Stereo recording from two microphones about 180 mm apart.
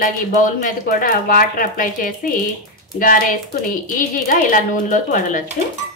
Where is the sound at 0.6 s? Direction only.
55° left (ahead or behind).